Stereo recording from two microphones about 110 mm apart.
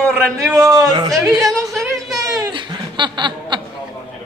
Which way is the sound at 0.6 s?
35° right (ahead or behind).